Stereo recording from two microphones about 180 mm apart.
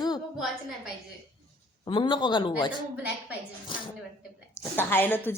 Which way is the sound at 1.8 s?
30° left (ahead or behind).